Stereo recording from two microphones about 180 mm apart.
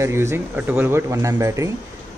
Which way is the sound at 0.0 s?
15° right (ahead or behind).